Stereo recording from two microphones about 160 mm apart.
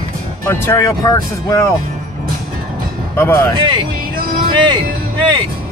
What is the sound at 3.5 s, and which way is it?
Speech, 30° right (ahead or behind).